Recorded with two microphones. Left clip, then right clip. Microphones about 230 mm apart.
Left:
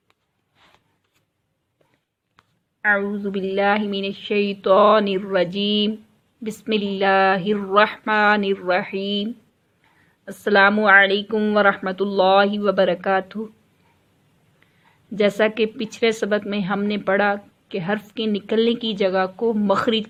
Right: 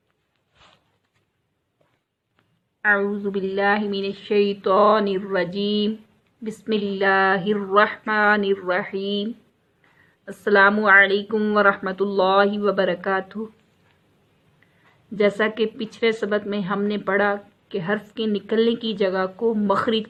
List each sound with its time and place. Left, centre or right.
2.8 s a woman's voice: centre
15.1 s a woman's voice: left